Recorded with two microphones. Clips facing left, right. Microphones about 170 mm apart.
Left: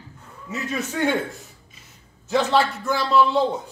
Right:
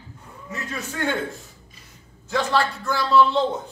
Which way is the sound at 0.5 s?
15° left (ahead or behind).